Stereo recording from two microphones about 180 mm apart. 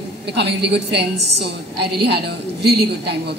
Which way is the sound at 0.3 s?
70° right (ahead or behind).